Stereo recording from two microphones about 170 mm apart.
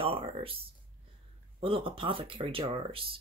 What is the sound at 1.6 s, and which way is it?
Speech, 35° right (ahead or behind).